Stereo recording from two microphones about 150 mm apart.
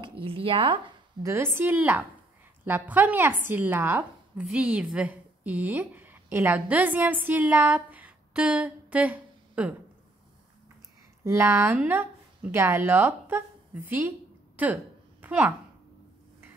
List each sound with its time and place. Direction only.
0.2 s speech: 35° right (ahead or behind)
1.2 s a woman's voice: 15° right (ahead or behind)
11.2 s speech: 15° right (ahead or behind)
15.2 s a woman's voice: 10° right (ahead or behind)